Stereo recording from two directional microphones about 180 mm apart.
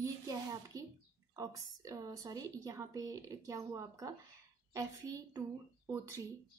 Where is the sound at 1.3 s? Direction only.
20° right (ahead or behind).